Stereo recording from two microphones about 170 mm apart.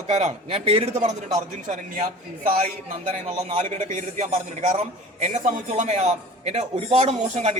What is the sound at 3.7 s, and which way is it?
A man's voice, 50° right (ahead or behind).